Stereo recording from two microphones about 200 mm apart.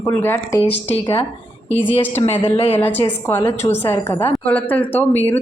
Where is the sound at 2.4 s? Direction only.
30° left (ahead or behind).